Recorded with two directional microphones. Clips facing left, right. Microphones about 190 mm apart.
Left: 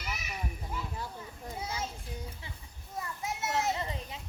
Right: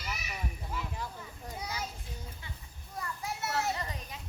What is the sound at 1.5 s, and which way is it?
Children playing, 25° left (ahead or behind).